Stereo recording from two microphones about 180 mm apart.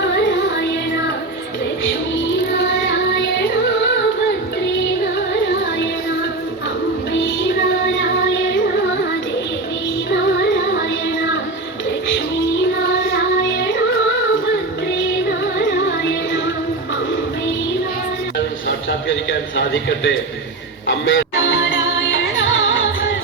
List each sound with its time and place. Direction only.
2.6 s child singing: 75° left (ahead or behind)
7.9 s music: 90° left
19.5 s a sound: 85° left
20.8 s music: 90° left